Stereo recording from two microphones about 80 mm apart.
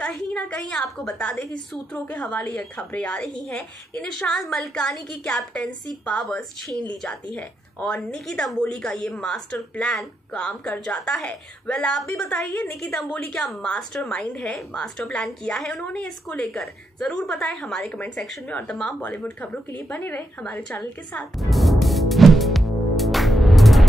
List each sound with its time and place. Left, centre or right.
0.0 s a woman's voice: centre
2.0 s a woman's voice: centre
11.0 s a woman's voice: centre
11.2 s a woman's voice: centre
18.5 s a woman's voice: centre
21.4 s music: centre